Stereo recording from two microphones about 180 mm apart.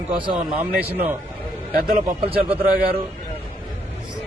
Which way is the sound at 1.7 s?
55° right (ahead or behind).